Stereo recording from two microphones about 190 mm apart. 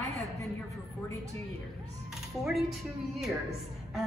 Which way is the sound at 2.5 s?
Centre (ahead or behind).